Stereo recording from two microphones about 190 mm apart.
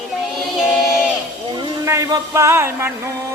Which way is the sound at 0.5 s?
Centre (ahead or behind).